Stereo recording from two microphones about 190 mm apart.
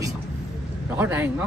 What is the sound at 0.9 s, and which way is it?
Speech, 10° right (ahead or behind).